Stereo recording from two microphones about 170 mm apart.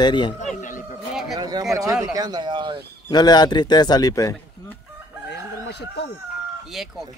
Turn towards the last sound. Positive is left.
turn(degrees=0)  # may be behind; listen again after turning